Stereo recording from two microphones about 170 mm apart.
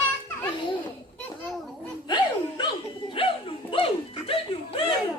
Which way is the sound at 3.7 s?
30° left (ahead or behind).